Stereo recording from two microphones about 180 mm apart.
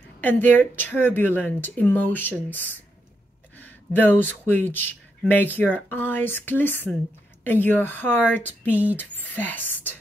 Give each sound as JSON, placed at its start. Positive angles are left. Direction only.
{"t": 0.2, "sound": "speech", "side_deg": 10}
{"t": 3.5, "sound": "speech", "side_deg": 10}